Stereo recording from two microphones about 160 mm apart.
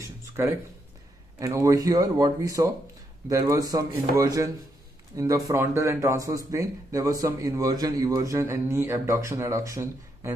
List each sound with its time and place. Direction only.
0.4 s speech: 15° right (ahead or behind)